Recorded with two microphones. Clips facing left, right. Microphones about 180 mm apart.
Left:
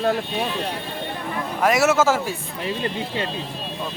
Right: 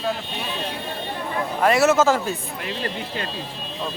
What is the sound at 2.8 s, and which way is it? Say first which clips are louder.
Speech: left 1 dB; 20° left (ahead or behind).